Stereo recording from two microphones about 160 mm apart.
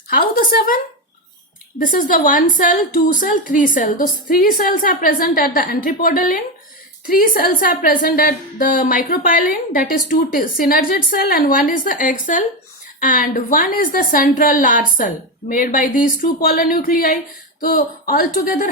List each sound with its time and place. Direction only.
0.1 s a woman's voice: 70° left (ahead or behind)
1.8 s a woman's voice: 60° left (ahead or behind)